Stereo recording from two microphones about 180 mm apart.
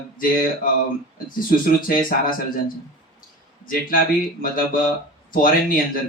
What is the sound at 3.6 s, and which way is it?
Speech, 50° left (ahead or behind).